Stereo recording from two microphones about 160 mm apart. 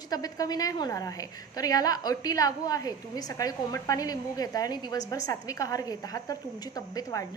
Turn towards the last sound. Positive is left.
turn(degrees=25)  # may be behind; listen again after turning